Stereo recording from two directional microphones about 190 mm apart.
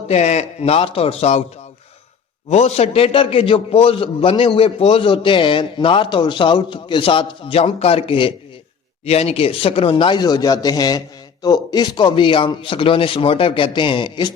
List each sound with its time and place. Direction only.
0.1 s a man's voice: 35° left (ahead or behind)
2.5 s a man's voice: 35° left (ahead or behind)